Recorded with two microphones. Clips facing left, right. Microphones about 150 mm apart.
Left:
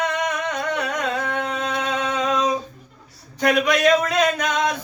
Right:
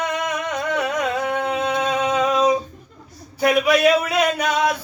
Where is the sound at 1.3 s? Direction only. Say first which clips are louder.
Right 3 dB; 10° right (ahead or behind).